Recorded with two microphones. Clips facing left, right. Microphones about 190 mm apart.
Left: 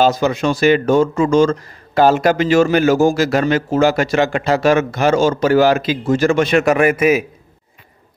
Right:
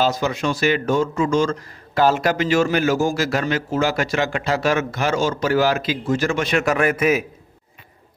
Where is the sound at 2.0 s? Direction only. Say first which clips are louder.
Left 5 dB; 60° left (ahead or behind).